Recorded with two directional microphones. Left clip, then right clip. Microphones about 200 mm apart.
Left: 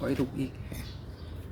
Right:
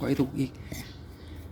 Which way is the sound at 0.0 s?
40° right (ahead or behind).